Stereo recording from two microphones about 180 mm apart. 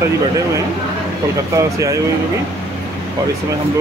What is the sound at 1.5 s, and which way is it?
Speech, 15° right (ahead or behind).